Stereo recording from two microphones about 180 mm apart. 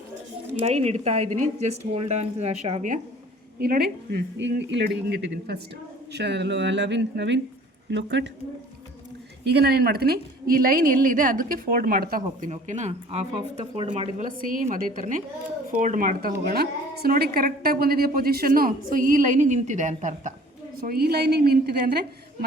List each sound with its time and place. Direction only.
0.6 s speech: 35° right (ahead or behind)
3.6 s a woman's voice: 60° right (ahead or behind)
4.4 s speech: 80° right
9.5 s a woman's voice: 65° right (ahead or behind)
12.5 s speech: 40° right (ahead or behind)
14.2 s a woman's voice: 50° right (ahead or behind)
20.8 s a woman's voice: 60° right (ahead or behind)